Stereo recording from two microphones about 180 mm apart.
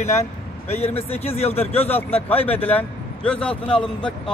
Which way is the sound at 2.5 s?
10° left (ahead or behind).